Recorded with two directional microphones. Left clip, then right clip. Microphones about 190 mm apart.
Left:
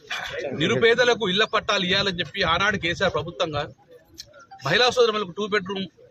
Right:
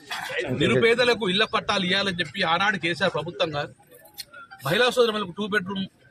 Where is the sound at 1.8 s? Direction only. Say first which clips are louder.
Left 1 dB; 30° left (ahead or behind).